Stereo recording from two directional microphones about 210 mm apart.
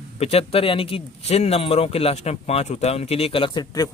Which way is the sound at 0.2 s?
30° left (ahead or behind).